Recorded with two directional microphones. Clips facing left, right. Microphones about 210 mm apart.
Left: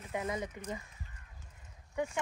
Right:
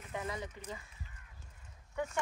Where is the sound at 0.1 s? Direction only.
20° left (ahead or behind).